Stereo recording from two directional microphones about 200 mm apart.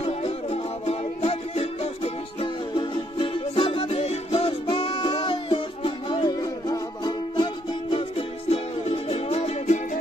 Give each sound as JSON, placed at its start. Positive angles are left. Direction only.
{"t": 0.2, "sound": "music", "side_deg": 30}